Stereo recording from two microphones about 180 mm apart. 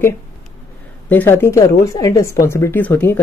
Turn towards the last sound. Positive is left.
turn(degrees=10)  # may be behind; listen again after turning